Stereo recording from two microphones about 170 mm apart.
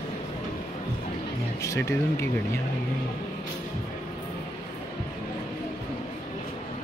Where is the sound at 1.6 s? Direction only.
15° left (ahead or behind).